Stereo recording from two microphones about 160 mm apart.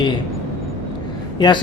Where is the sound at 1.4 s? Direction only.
30° left (ahead or behind).